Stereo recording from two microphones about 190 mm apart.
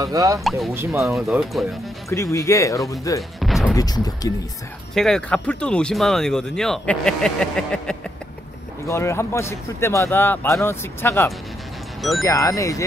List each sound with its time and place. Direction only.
0.0 s speech: 20° right (ahead or behind)
0.4 s speech: centre (ahead or behind)
2.0 s speech: 15° left (ahead or behind)
3.2 s speech: centre (ahead or behind)
3.7 s speech: 20° left (ahead or behind)
4.9 s speech: 5° left (ahead or behind)
8.8 s speech: 15° left (ahead or behind)